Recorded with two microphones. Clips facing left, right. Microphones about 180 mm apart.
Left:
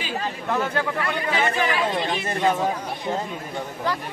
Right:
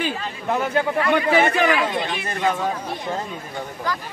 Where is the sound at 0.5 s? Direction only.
20° right (ahead or behind).